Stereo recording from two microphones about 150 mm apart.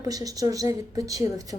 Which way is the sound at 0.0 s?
25° right (ahead or behind).